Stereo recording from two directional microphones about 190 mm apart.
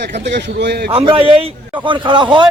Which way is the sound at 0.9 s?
30° right (ahead or behind).